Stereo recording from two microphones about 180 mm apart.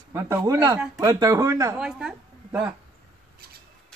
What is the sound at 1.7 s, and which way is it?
Speech, 5° right (ahead or behind).